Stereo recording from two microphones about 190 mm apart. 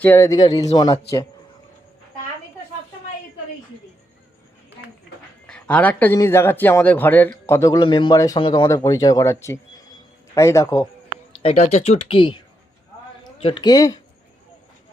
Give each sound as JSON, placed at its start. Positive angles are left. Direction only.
{"t": 0.0, "sound": "speech", "side_deg": 15}
{"t": 5.5, "sound": "speech", "side_deg": 10}
{"t": 11.1, "sound": "speech", "side_deg": 35}
{"t": 13.4, "sound": "speech", "side_deg": 25}